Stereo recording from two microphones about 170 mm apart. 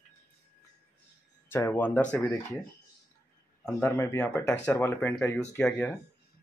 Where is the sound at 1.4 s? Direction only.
15° left (ahead or behind).